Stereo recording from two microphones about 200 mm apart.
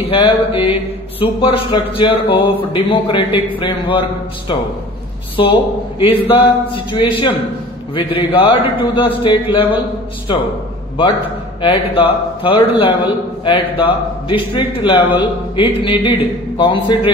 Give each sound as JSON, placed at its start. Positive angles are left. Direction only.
{"t": 0.1, "sound": "a man's voice", "side_deg": 25}
{"t": 5.3, "sound": "a man's voice", "side_deg": 25}
{"t": 11.6, "sound": "a man's voice", "side_deg": 25}